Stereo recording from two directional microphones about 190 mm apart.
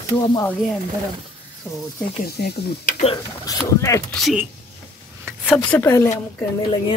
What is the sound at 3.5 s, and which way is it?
Speech, 15° left (ahead or behind).